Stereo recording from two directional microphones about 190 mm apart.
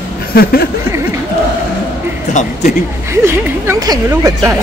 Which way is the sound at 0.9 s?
15° right (ahead or behind).